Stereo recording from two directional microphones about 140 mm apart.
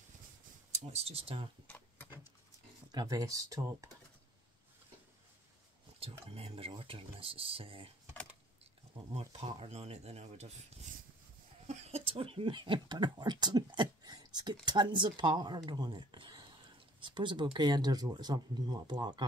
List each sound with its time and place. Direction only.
0.7 s speech: 50° right (ahead or behind)
2.9 s speech: 25° right (ahead or behind)
6.2 s speech: 45° right (ahead or behind)
9.0 s speech: 40° right (ahead or behind)
11.6 s speech: 50° right (ahead or behind); by 19.2 s 30° right (ahead or behind)